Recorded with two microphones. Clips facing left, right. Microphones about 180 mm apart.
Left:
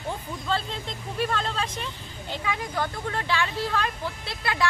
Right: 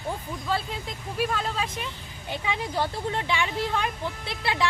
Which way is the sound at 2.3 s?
25° right (ahead or behind).